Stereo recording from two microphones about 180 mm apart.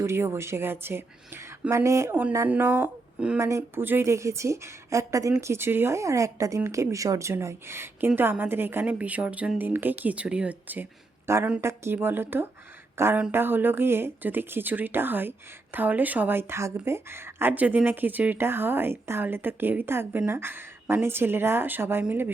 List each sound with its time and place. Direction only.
0.0 s speech: 15° right (ahead or behind)